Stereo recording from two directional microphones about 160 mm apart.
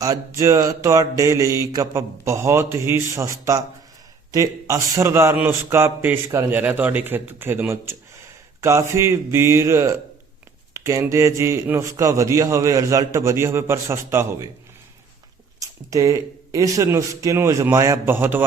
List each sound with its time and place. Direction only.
0.0 s mantra: 20° right (ahead or behind)
4.3 s a man's voice: 20° right (ahead or behind)
15.6 s mantra: 20° right (ahead or behind)